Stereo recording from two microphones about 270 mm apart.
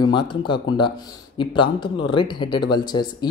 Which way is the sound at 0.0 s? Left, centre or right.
Centre.